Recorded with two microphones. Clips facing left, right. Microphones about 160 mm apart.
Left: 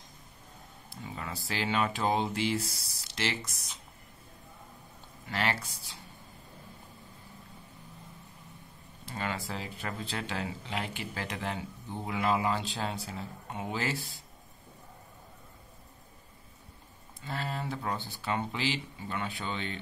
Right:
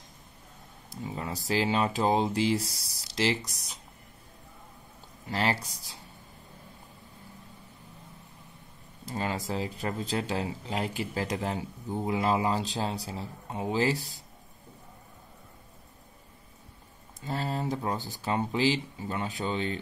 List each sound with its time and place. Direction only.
1.0 s speech: 35° right (ahead or behind)
5.3 s speech: 35° right (ahead or behind)
9.0 s speech: 35° right (ahead or behind)
17.2 s speech: 40° right (ahead or behind)